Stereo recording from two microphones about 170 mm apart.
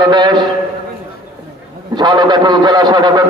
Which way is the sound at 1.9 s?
25° right (ahead or behind).